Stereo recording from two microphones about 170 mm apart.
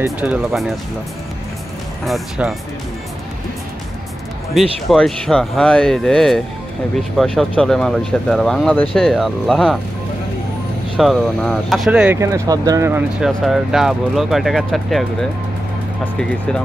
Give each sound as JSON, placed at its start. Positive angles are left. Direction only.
{"t": 0.0, "sound": "speech", "side_deg": -10}
{"t": 2.0, "sound": "speech", "side_deg": 0}
{"t": 4.8, "sound": "speech", "side_deg": 5}
{"t": 11.0, "sound": "speech", "side_deg": 0}
{"t": 12.2, "sound": "speech", "side_deg": -20}
{"t": 13.2, "sound": "speech", "side_deg": -5}